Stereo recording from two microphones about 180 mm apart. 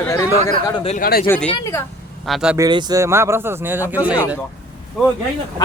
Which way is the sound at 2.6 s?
25° right (ahead or behind).